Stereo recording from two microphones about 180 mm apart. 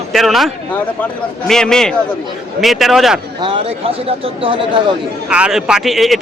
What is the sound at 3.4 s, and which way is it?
Speech, 30° right (ahead or behind).